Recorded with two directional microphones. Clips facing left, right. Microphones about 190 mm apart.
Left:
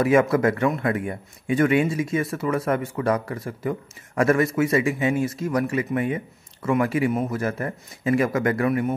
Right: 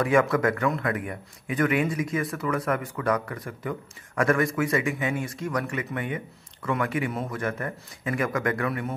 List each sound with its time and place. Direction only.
0.0 s a man's voice: 25° left (ahead or behind)